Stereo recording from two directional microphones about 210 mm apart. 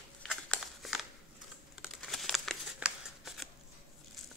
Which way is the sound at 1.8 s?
Centre (ahead or behind).